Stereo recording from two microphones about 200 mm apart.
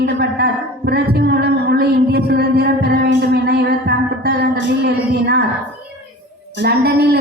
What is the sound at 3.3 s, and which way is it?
Music, 55° right (ahead or behind).